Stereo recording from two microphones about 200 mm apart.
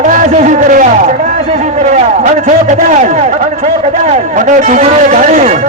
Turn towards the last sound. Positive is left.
turn(degrees=-35)  # may be behind; listen again after turning